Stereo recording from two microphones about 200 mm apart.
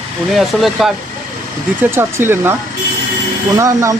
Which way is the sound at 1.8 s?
10° right (ahead or behind).